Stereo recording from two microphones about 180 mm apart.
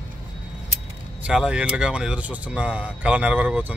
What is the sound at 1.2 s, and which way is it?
Speech, 5° right (ahead or behind).